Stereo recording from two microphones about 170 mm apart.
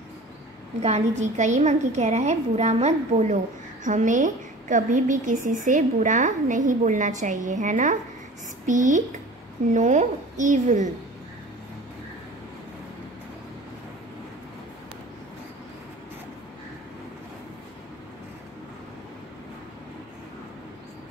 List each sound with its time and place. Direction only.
0.8 s a woman's voice: 40° right (ahead or behind)